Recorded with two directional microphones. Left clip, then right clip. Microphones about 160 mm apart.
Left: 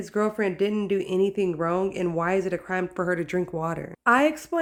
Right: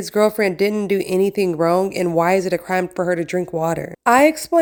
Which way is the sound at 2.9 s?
20° right (ahead or behind).